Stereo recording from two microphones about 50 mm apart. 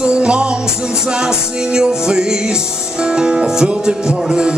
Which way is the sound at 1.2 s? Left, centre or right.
Centre.